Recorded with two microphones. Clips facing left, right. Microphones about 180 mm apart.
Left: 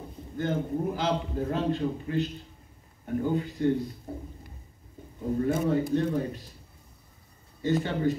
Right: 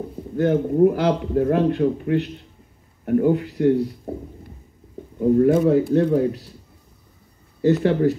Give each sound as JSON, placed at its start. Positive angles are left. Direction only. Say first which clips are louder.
{"t": 0.4, "sound": "a man's voice", "louder": "right 12 dB", "side_deg": -65}
{"t": 5.4, "sound": "speech", "louder": "right 8 dB", "side_deg": -70}
{"t": 7.6, "sound": "speech", "louder": "right 9 dB", "side_deg": -70}